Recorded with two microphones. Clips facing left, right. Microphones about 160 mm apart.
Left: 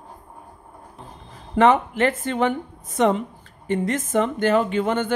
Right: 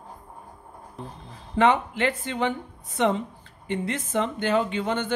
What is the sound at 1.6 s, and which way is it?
Speech, 45° left (ahead or behind).